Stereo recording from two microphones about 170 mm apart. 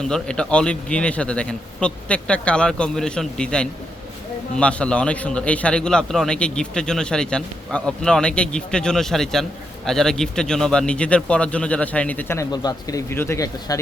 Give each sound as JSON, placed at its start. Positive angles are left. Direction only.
{"t": 0.0, "sound": "a man's voice", "side_deg": 5}